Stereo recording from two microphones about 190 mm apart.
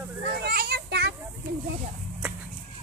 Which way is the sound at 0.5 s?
60° right (ahead or behind).